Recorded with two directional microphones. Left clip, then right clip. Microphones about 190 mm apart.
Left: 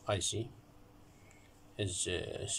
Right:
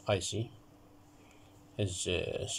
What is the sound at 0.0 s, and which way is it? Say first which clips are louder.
Speech: right 3 dB; 10° right (ahead or behind).